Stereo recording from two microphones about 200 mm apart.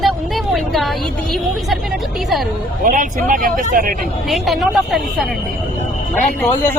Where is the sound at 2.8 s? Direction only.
40° right (ahead or behind).